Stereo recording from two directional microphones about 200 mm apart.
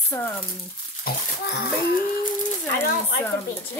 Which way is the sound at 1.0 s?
50° left (ahead or behind).